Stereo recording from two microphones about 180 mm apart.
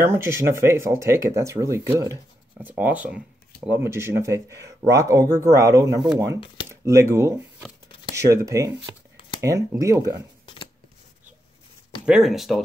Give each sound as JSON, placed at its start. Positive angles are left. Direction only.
{"t": 0.0, "sound": "speech", "side_deg": -15}
{"t": 12.1, "sound": "speech", "side_deg": 0}